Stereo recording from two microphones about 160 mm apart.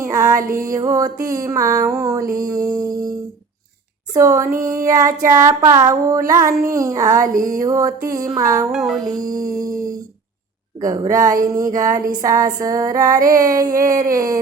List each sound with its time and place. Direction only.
0.1 s music: 20° right (ahead or behind)
0.3 s music: 60° right (ahead or behind)
0.6 s child singing: 20° right (ahead or behind)
4.1 s child singing: 20° right (ahead or behind)
10.8 s child singing: 25° right (ahead or behind)